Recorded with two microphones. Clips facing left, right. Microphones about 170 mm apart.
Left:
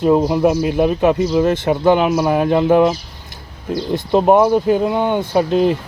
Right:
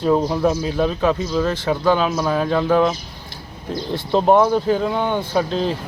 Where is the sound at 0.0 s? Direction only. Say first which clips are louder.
Left 4 dB; 10° left (ahead or behind).